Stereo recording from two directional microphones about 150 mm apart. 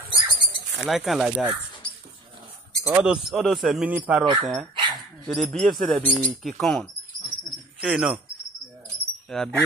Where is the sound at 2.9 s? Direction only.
5° right (ahead or behind).